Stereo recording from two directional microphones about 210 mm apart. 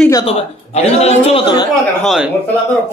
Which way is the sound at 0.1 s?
25° left (ahead or behind).